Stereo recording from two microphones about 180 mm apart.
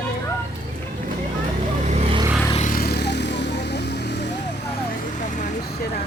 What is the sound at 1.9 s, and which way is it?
Vehicle, 30° right (ahead or behind).